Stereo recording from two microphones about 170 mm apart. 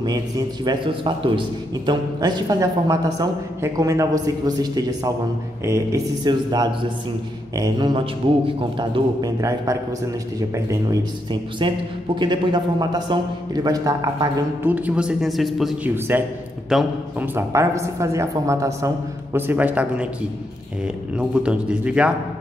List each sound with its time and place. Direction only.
0.7 s a woman's voice: 30° right (ahead or behind)
11.6 s a woman's voice: 30° right (ahead or behind)
14.7 s speech: 5° right (ahead or behind)
16.1 s a man's voice: 10° right (ahead or behind)